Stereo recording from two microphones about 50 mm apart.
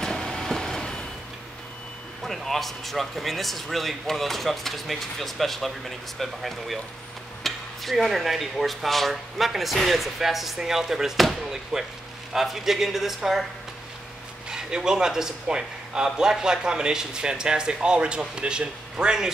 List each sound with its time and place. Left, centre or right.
0.0 s vehicle: centre
2.2 s a man's voice: centre
14.5 s a man's voice: centre